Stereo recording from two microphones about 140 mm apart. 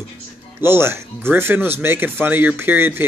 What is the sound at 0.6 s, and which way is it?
Speech, 15° right (ahead or behind).